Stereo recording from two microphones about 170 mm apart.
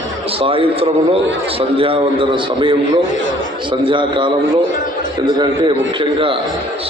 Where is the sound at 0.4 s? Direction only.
35° right (ahead or behind).